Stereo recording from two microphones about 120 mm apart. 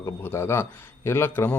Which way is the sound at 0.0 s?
20° left (ahead or behind).